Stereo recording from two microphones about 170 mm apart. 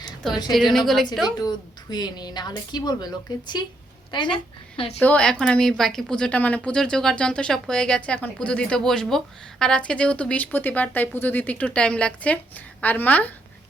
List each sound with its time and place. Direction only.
0.5 s speech: centre (ahead or behind)
1.2 s a woman's voice: 25° left (ahead or behind)
4.9 s speech: 10° left (ahead or behind)